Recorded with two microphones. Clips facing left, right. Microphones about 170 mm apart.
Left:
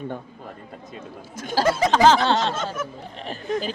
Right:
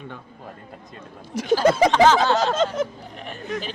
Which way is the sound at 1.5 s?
35° left (ahead or behind).